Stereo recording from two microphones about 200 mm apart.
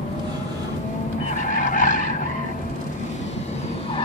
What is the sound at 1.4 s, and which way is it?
Skidding, 40° left (ahead or behind).